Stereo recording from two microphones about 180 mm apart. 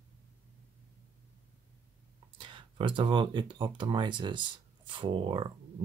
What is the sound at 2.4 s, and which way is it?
Speech, 25° right (ahead or behind).